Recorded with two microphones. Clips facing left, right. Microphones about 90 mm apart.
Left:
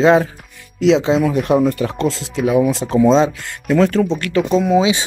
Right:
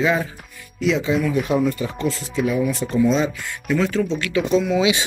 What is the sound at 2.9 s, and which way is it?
Speech, 90° left.